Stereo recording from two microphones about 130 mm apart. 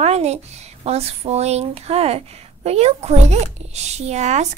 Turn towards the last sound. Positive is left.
turn(degrees=-60)  # may be behind; listen again after turning